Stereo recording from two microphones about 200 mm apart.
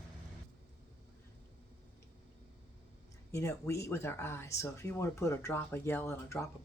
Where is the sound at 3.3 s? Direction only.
15° left (ahead or behind).